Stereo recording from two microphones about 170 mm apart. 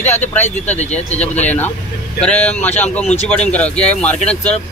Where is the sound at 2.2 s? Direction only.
5° left (ahead or behind).